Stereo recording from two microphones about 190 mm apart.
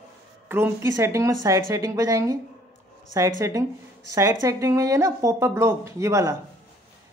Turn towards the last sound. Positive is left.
turn(degrees=-15)  # may be behind; listen again after turning